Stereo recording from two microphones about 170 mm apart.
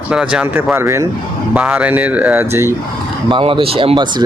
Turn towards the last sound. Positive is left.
turn(degrees=-25)  # may be behind; listen again after turning